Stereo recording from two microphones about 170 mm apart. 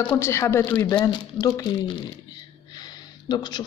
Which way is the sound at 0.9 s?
25° left (ahead or behind).